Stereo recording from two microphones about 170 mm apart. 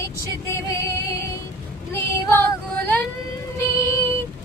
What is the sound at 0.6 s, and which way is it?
Music, 15° left (ahead or behind).